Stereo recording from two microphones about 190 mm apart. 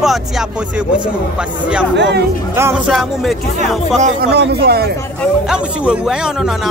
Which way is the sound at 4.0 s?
55° right (ahead or behind).